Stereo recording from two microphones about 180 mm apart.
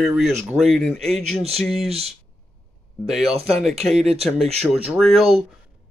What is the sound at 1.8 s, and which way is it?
Speech, 35° right (ahead or behind).